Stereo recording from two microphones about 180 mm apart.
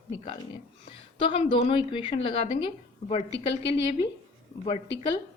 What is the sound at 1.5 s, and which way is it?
Speech, 30° left (ahead or behind).